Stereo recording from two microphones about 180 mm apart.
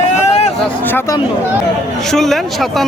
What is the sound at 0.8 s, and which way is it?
Speech, 10° left (ahead or behind).